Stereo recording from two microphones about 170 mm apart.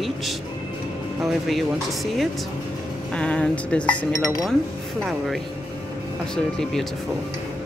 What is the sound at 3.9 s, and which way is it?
Speech, 20° left (ahead or behind).